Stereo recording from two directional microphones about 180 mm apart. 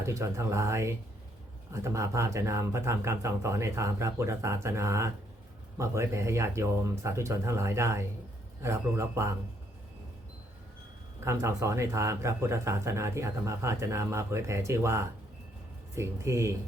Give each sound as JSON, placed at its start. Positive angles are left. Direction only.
{"t": 0.0, "sound": "speech", "side_deg": -15}
{"t": 11.3, "sound": "speech", "side_deg": -15}